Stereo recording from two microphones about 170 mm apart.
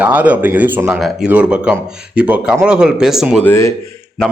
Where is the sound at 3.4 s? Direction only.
15° left (ahead or behind).